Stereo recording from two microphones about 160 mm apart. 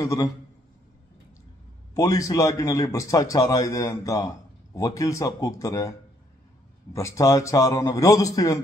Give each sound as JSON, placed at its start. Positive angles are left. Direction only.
{"t": 0.0, "sound": "speech", "side_deg": 20}
{"t": 2.0, "sound": "speech", "side_deg": 20}